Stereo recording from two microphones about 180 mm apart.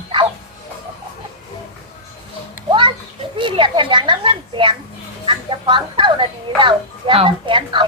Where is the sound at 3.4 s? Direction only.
25° right (ahead or behind).